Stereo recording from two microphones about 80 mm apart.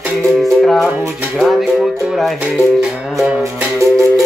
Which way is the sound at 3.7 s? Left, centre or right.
Right.